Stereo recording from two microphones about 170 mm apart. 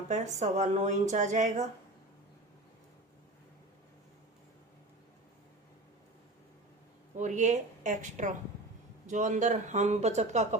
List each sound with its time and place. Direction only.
0.1 s a woman's voice: 45° right (ahead or behind)
7.2 s a woman's voice: 45° right (ahead or behind)